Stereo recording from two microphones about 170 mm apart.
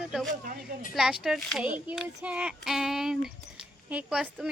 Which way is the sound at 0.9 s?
5° right (ahead or behind).